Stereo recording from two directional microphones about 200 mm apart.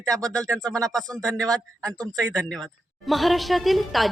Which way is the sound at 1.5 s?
20° right (ahead or behind).